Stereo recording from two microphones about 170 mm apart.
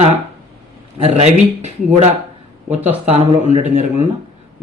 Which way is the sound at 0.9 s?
40° right (ahead or behind).